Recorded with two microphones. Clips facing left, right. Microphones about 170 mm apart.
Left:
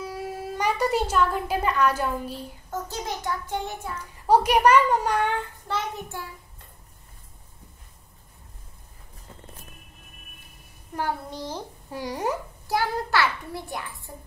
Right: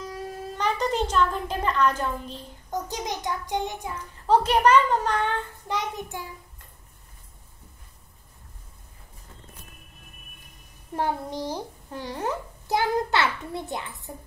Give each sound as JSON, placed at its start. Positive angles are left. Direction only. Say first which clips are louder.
{"t": 0.0, "sound": "speech", "louder": "left 2 dB", "side_deg": 10}
{"t": 2.7, "sound": "child singing", "louder": "right 2 dB", "side_deg": -15}
{"t": 4.0, "sound": "a child's voice", "louder": "left 1 dB", "side_deg": 10}
{"t": 5.7, "sound": "child singing", "louder": "right 1 dB", "side_deg": -15}
{"t": 11.0, "sound": "child singing", "louder": "right 2 dB", "side_deg": -20}
{"t": 11.9, "sound": "a child's voice", "louder": "left 2 dB", "side_deg": 10}
{"t": 12.6, "sound": "a child's voice", "louder": "right 2 dB", "side_deg": -20}